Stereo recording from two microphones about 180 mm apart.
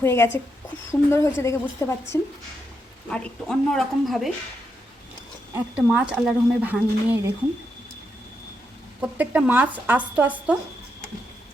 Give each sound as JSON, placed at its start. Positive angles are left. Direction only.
{"t": 0.0, "sound": "speech", "side_deg": 15}
{"t": 3.1, "sound": "speech", "side_deg": 5}
{"t": 5.5, "sound": "speech", "side_deg": -5}
{"t": 9.0, "sound": "speech", "side_deg": -10}